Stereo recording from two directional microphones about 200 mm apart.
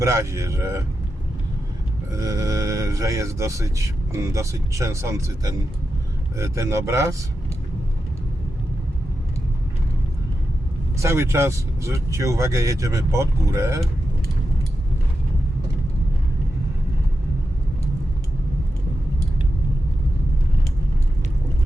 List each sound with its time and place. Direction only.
0.0 s speech: 15° right (ahead or behind)
2.1 s speech: 15° right (ahead or behind)
11.0 s speech: 15° right (ahead or behind)